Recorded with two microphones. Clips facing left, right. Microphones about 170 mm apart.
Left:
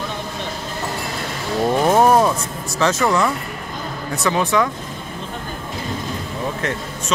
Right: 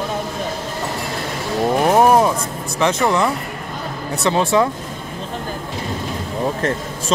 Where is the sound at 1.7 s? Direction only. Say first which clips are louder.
Right 1 dB; 15° right (ahead or behind).